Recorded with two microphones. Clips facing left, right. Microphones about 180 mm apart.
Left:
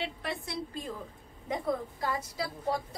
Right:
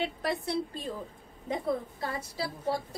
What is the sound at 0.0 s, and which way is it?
Speech, 40° right (ahead or behind).